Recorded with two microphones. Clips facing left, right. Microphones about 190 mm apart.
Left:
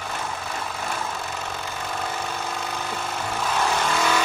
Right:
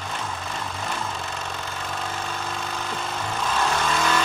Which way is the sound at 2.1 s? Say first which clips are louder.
Left 1 dB; 15° left (ahead or behind).